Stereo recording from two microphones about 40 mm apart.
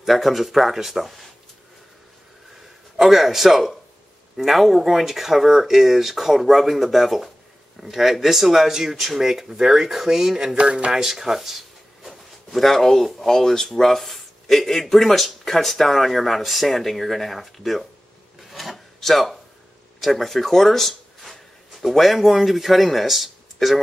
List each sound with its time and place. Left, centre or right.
0.0 s speech: centre
3.0 s speech: centre
10.6 s speech: right
10.9 s a sound: centre
12.5 s speech: centre
18.5 s filing: centre
20.0 s speech: centre